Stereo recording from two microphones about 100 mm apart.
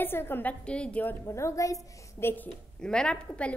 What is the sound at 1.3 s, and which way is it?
Speech, 30° left (ahead or behind).